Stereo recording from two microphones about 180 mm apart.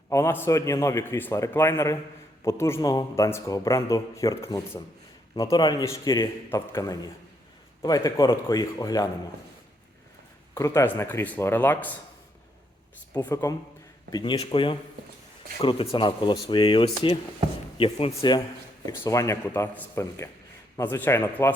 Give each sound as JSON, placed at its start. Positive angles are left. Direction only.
{"t": 0.1, "sound": "a man's voice", "side_deg": 15}
{"t": 10.5, "sound": "speech", "side_deg": 15}
{"t": 13.1, "sound": "a man's voice", "side_deg": 15}